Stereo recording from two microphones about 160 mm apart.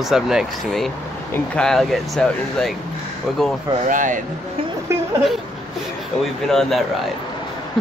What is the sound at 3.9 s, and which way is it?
Speech, 55° right (ahead or behind).